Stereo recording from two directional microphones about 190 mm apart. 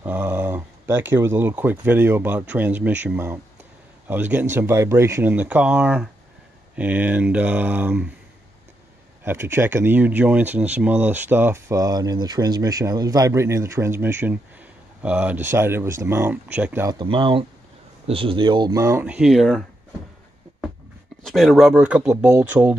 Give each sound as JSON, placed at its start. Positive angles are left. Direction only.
{"t": 0.0, "sound": "speech", "side_deg": -10}
{"t": 9.2, "sound": "speech", "side_deg": -10}
{"t": 17.0, "sound": "speech", "side_deg": -25}
{"t": 21.2, "sound": "speech", "side_deg": 0}